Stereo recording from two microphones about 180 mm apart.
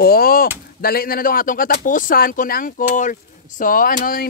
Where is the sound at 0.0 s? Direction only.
55° left (ahead or behind).